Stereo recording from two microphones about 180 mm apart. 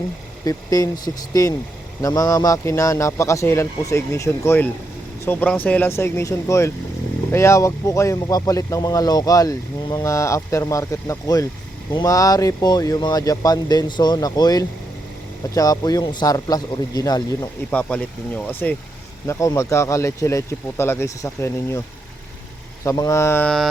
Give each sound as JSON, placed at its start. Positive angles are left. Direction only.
{"t": 0.4, "sound": "speech", "side_deg": 20}
{"t": 17.7, "sound": "speech", "side_deg": 10}
{"t": 22.8, "sound": "speech", "side_deg": 20}